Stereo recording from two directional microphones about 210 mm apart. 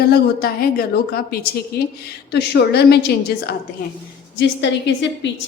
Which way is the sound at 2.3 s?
50° left (ahead or behind).